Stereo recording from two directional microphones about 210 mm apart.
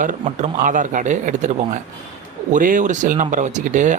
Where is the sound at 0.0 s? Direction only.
35° right (ahead or behind).